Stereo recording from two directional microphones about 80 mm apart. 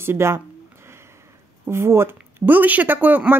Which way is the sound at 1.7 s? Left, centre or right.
Right.